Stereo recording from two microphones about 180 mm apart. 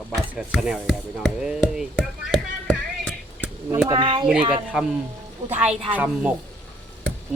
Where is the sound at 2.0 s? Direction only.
5° left (ahead or behind).